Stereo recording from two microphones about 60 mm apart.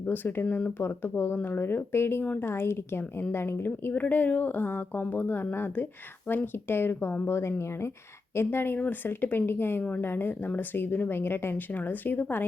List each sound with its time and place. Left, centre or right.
0.0 s a woman's voice: left
7.3 s a woman's voice: left